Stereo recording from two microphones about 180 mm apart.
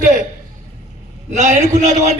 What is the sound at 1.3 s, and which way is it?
Speech, 40° right (ahead or behind).